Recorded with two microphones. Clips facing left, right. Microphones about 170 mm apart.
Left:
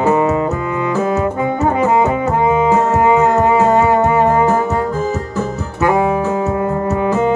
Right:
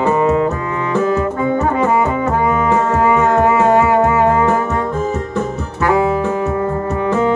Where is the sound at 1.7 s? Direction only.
20° left (ahead or behind).